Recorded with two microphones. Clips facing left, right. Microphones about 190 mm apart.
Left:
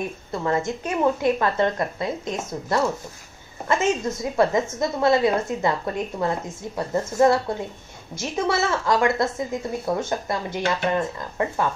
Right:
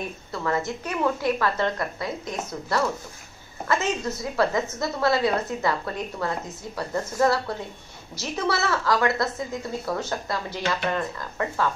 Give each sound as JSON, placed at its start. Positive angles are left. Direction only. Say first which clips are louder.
{"t": 0.3, "sound": "a woman's voice", "louder": "left 3 dB", "side_deg": 25}